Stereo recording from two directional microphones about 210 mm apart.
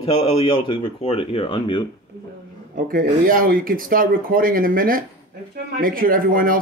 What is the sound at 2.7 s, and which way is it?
Speech, 40° right (ahead or behind).